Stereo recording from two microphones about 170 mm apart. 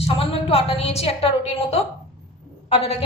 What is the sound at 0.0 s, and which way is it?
A woman's voice, 35° left (ahead or behind).